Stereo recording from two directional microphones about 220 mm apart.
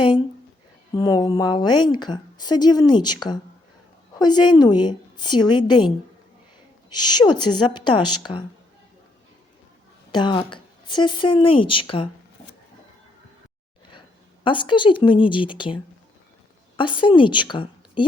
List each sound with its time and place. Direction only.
0.9 s a woman's voice: 20° left (ahead or behind)
6.9 s a woman's voice: 20° left (ahead or behind)
10.1 s a woman's voice: 20° left (ahead or behind)
14.4 s a woman's voice: 20° left (ahead or behind)